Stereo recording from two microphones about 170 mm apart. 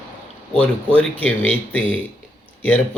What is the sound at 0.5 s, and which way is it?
Speech, 30° right (ahead or behind).